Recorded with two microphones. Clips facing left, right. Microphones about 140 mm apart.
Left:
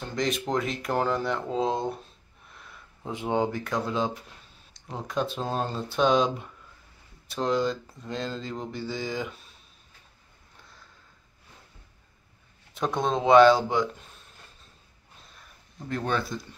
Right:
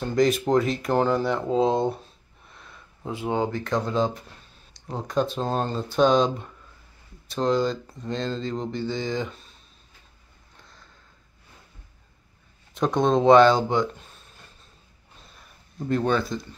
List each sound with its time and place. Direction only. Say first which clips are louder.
0.1 s speech: right 7 dB; 5° right (ahead or behind)
2.5 s a sound: right 1 dB; centre (ahead or behind)
3.3 s speech: right 1 dB; 10° left (ahead or behind)
12.7 s speech: right 6 dB; centre (ahead or behind)
16.1 s speech: right 2 dB; centre (ahead or behind)